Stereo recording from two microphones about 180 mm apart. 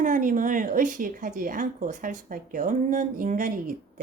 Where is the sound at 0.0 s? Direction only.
45° right (ahead or behind).